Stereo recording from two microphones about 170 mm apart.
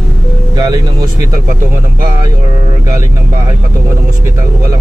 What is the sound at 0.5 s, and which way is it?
Speech, 25° right (ahead or behind).